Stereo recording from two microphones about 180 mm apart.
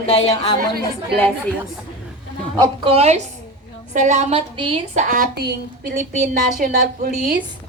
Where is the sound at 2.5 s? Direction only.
25° right (ahead or behind).